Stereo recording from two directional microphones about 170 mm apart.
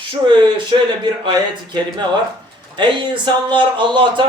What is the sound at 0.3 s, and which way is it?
A man's voice, 30° right (ahead or behind).